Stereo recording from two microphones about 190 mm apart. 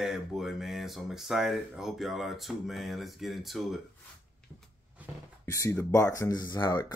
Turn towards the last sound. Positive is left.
turn(degrees=20)  # may be behind; listen again after turning